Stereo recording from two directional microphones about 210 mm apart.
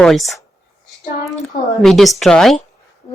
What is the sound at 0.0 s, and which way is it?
Speech, centre (ahead or behind).